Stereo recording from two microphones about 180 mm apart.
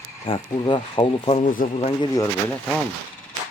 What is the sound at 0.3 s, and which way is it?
Speech, 25° left (ahead or behind).